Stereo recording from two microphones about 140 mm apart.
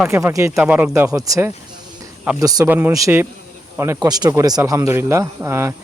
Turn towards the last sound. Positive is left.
turn(degrees=-20)  # may be behind; listen again after turning